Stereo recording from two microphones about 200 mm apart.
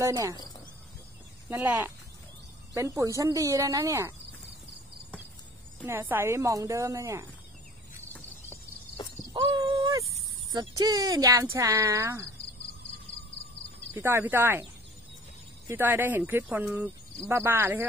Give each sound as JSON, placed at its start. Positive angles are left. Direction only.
{"t": 0.0, "sound": "speech", "side_deg": -15}
{"t": 1.5, "sound": "speech", "side_deg": -10}
{"t": 5.9, "sound": "speech", "side_deg": -10}
{"t": 9.3, "sound": "a sound", "side_deg": -25}
{"t": 10.8, "sound": "speech", "side_deg": -20}
{"t": 13.9, "sound": "speech", "side_deg": -10}
{"t": 15.7, "sound": "speech", "side_deg": -10}